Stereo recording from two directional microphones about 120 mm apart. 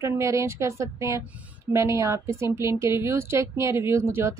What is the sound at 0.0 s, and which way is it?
Speech, 25° right (ahead or behind).